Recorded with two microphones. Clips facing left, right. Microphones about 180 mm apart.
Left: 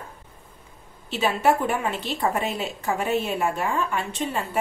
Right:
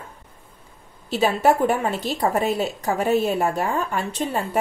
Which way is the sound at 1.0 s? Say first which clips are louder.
Right 3 dB; 40° right (ahead or behind).